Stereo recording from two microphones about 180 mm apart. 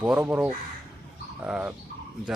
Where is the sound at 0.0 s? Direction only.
10° right (ahead or behind).